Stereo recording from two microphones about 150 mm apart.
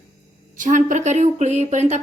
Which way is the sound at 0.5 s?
60° right (ahead or behind).